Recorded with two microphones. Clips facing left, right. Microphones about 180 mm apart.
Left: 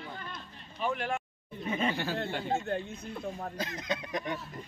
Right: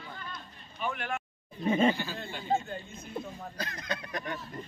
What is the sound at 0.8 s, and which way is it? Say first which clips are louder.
Speech: left 2 dB; 30° left (ahead or behind).